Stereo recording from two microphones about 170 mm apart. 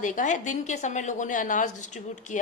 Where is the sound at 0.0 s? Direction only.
50° left (ahead or behind).